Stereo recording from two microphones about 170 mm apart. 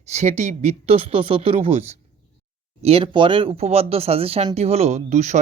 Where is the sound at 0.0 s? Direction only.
40° right (ahead or behind).